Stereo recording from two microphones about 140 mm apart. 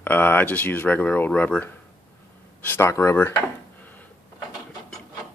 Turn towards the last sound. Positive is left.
turn(degrees=15)  # may be behind; listen again after turning